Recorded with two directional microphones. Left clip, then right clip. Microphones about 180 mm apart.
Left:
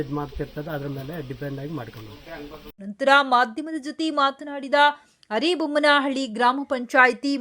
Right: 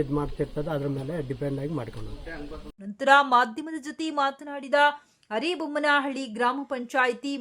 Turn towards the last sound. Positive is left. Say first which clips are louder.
# left 7 dB
turn(degrees=20)  # may be behind; listen again after turning